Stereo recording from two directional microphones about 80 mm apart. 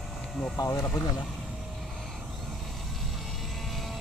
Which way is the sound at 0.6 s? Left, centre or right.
Left.